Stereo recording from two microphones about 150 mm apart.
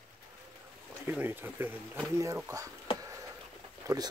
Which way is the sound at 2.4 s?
20° right (ahead or behind).